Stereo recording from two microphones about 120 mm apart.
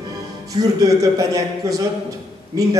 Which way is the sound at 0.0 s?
30° right (ahead or behind).